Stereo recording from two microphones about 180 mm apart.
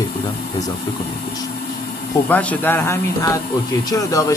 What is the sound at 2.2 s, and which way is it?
Speech, 10° left (ahead or behind).